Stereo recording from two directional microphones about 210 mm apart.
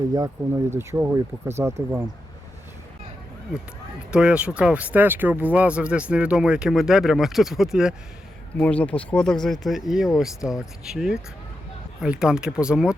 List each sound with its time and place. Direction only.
0.1 s speech: 15° right (ahead or behind)
4.1 s speech: 5° right (ahead or behind)